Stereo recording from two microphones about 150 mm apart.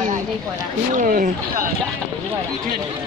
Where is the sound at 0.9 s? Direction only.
65° right (ahead or behind).